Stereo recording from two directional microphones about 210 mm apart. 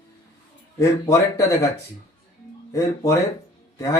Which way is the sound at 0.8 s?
15° left (ahead or behind).